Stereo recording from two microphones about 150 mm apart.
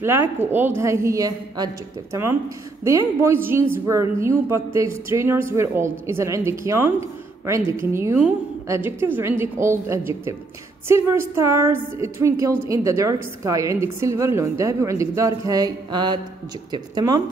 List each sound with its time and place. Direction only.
0.0 s a woman's voice: 15° right (ahead or behind)
2.8 s a woman's voice: 20° right (ahead or behind)